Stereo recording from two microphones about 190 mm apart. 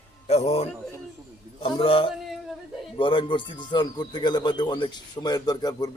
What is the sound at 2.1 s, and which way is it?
Male singing, centre (ahead or behind).